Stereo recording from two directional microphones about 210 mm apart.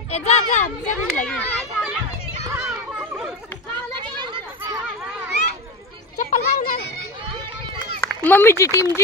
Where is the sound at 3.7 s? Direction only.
20° right (ahead or behind).